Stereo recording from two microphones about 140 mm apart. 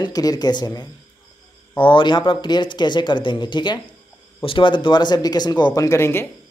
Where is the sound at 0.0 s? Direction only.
25° left (ahead or behind).